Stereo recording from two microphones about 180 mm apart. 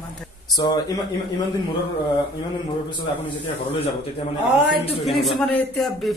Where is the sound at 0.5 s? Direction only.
20° left (ahead or behind).